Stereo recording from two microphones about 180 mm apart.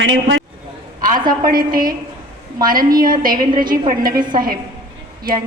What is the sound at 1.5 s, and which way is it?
A woman's voice, 55° right (ahead or behind).